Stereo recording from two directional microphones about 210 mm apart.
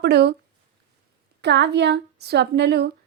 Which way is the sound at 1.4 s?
55° right (ahead or behind).